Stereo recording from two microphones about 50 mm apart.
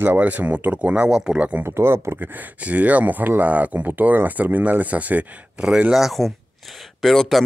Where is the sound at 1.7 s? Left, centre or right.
Right.